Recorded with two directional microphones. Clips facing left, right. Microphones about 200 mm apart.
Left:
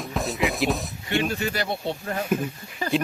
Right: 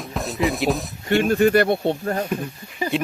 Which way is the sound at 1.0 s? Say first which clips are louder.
Right 12 dB; 50° right (ahead or behind).